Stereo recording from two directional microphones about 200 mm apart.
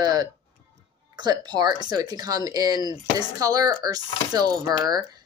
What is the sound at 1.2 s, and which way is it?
Speech, 20° right (ahead or behind).